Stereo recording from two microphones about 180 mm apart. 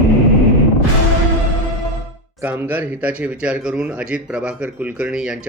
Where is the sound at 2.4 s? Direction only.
10° right (ahead or behind).